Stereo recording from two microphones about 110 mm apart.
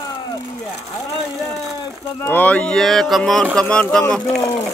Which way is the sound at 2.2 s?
15° left (ahead or behind).